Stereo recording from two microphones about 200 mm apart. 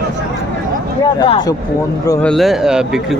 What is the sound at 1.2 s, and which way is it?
Speech, 20° left (ahead or behind).